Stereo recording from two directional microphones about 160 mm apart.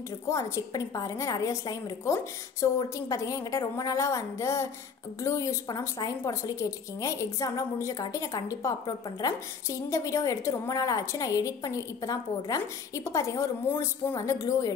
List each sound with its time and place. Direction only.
0.3 s a woman's voice: 20° left (ahead or behind)